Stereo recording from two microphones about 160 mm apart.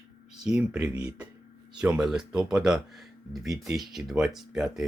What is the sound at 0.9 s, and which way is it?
Speech, 25° right (ahead or behind).